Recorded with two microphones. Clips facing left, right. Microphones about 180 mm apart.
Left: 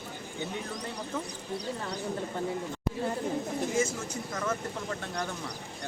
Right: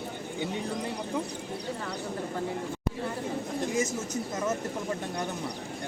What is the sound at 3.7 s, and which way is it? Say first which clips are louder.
Speech: right 1 dB; 20° right (ahead or behind).